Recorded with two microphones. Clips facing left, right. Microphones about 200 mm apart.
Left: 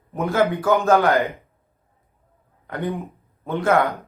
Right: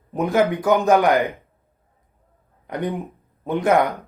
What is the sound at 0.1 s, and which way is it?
Speech, 20° right (ahead or behind).